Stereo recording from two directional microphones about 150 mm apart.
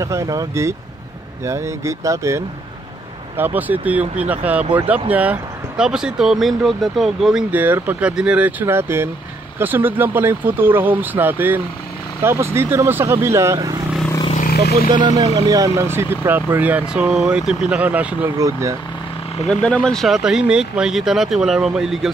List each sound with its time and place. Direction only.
0.0 s speech: 20° right (ahead or behind)
14.3 s vehicle: 75° left (ahead or behind)
15.0 s speech: 25° right (ahead or behind)
19.4 s speech: 5° left (ahead or behind)